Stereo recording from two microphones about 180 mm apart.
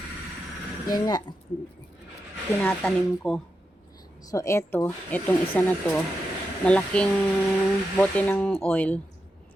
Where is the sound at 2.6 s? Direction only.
5° left (ahead or behind).